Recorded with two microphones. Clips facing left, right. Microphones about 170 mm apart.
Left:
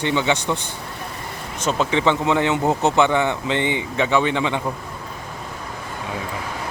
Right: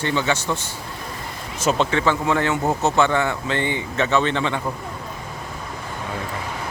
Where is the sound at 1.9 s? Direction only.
20° left (ahead or behind).